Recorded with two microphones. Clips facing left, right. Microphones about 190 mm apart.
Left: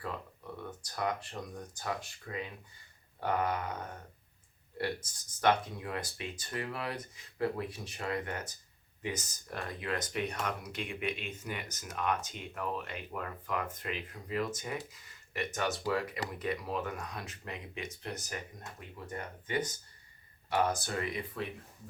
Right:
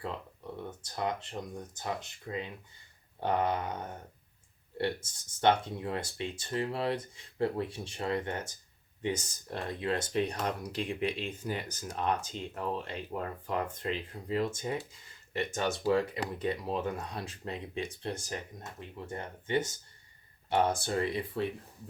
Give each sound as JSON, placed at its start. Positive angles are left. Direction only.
{"t": 0.6, "sound": "speech", "side_deg": -25}
{"t": 5.4, "sound": "speech", "side_deg": -25}